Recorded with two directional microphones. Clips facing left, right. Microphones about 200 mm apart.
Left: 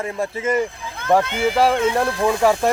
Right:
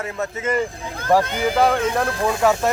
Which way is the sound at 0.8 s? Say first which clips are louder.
Right 2 dB; 35° right (ahead or behind).